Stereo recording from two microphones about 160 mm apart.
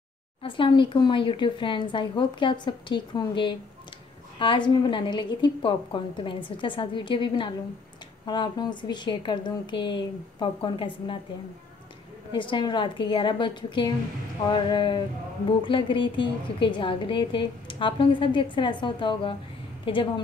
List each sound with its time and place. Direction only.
0.4 s a woman's voice: 30° left (ahead or behind)
12.3 s a woman's voice: 30° left (ahead or behind)